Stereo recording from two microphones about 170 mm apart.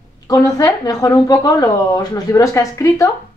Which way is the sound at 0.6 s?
20° left (ahead or behind).